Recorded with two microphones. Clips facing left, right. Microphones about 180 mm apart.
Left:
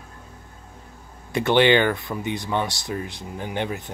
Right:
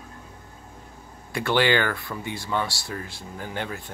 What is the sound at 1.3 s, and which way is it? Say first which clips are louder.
Speech: left 5 dB; 20° left (ahead or behind).